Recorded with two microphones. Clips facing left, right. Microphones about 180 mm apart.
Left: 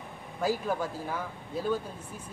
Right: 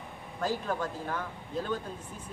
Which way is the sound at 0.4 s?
10° left (ahead or behind).